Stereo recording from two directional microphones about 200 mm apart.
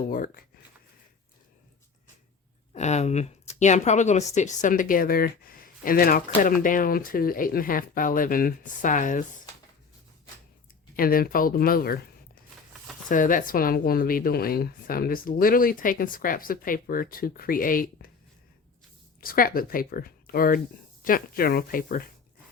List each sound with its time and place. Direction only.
0.1 s speech: 45° left (ahead or behind)
2.7 s speech: 35° left (ahead or behind)
10.9 s speech: 45° left (ahead or behind)
19.2 s speech: 45° left (ahead or behind)